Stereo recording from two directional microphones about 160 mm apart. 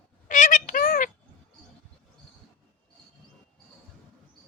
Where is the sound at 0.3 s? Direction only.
50° left (ahead or behind).